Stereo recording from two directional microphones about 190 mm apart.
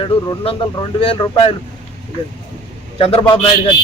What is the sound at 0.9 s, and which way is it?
Speech, 25° left (ahead or behind).